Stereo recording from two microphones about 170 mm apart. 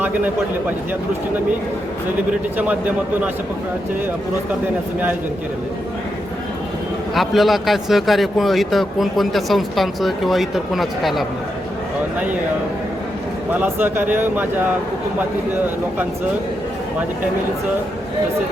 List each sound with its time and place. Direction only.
7.1 s speech: centre (ahead or behind)
13.5 s speech: 10° right (ahead or behind)